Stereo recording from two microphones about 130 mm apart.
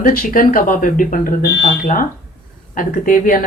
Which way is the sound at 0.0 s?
90° left.